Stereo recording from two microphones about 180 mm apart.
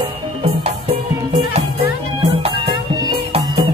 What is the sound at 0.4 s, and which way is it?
Music, 35° right (ahead or behind).